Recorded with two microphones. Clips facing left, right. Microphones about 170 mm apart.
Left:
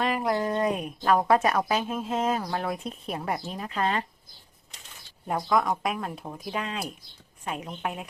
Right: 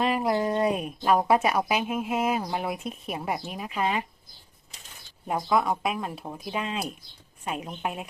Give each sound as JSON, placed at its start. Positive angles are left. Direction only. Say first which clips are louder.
{"t": 0.1, "sound": "speech", "louder": "right 1 dB", "side_deg": -15}
{"t": 5.3, "sound": "speech", "louder": "even", "side_deg": -5}
{"t": 7.5, "sound": "a woman's voice", "louder": "right 1 dB", "side_deg": -20}